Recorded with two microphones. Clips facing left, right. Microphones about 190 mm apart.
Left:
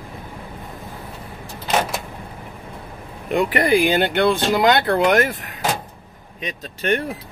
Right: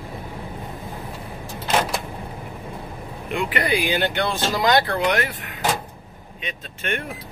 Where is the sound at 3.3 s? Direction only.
40° left (ahead or behind).